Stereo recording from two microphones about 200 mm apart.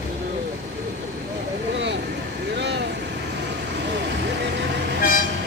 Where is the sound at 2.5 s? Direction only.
60° right (ahead or behind).